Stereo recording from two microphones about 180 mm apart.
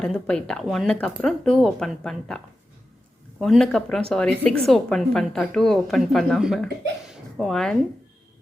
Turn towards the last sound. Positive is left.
turn(degrees=0)  # may be behind; listen again after turning